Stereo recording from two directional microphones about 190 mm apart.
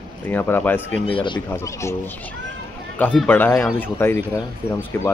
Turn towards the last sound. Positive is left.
turn(degrees=10)  # may be behind; listen again after turning